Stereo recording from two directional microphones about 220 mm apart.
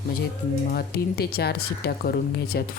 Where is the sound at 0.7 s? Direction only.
45° left (ahead or behind).